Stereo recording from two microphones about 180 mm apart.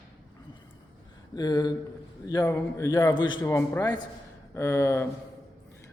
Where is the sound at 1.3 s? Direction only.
20° left (ahead or behind).